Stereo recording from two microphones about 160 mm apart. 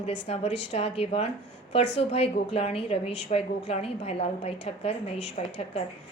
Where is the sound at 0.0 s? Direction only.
40° left (ahead or behind).